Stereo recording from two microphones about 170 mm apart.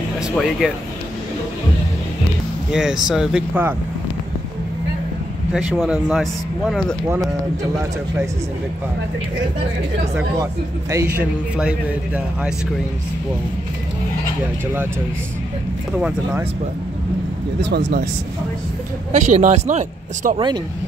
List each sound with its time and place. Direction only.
0.4 s speech: centre (ahead or behind)
2.7 s speech: 5° right (ahead or behind)
5.5 s speech: centre (ahead or behind)
10.1 s speech: 20° right (ahead or behind)
11.1 s speech: 5° right (ahead or behind)
16.0 s speech: 5° right (ahead or behind)
17.6 s speech: 90° right
19.1 s speech: 40° right (ahead or behind)
20.3 s speech: 25° right (ahead or behind)